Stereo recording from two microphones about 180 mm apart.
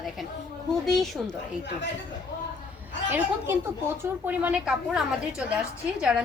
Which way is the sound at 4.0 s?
10° right (ahead or behind).